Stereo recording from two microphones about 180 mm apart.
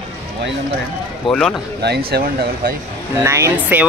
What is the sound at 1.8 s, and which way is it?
Speech, 60° right (ahead or behind).